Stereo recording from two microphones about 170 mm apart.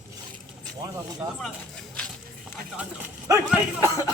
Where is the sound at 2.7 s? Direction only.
15° right (ahead or behind).